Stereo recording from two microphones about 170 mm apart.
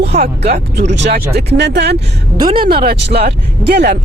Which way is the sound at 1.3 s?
75° right (ahead or behind).